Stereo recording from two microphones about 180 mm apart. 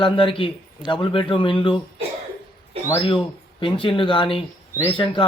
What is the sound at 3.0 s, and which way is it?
Speech, 30° left (ahead or behind).